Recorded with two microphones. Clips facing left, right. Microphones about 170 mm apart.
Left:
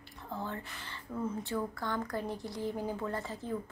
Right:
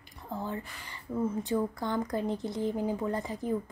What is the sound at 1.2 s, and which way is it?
A woman's voice, 15° right (ahead or behind).